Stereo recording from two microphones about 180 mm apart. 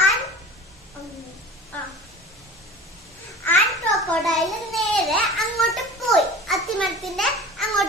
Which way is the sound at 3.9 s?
Centre (ahead or behind).